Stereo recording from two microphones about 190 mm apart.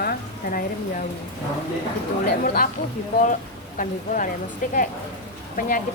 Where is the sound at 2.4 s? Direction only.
50° left (ahead or behind).